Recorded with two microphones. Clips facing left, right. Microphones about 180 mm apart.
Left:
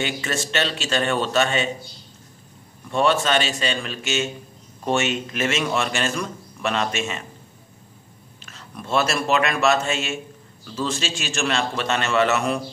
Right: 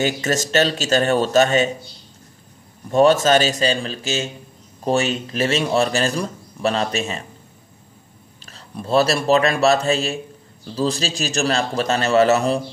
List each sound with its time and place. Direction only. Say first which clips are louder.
0.0 s a man's voice: right 5 dB; 40° right (ahead or behind)
2.9 s a man's voice: right 6 dB; 40° right (ahead or behind)
8.5 s a man's voice: right 5 dB; 35° right (ahead or behind)